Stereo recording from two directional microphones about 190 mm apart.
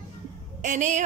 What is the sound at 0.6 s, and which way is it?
Speech, 40° right (ahead or behind).